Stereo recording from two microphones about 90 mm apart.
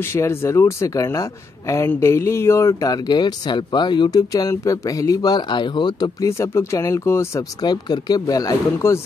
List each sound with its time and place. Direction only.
0.0 s speech: 30° left (ahead or behind); by 6.1 s 55° left (ahead or behind)
6.2 s speech: 30° left (ahead or behind)
7.6 s speech: 55° left (ahead or behind)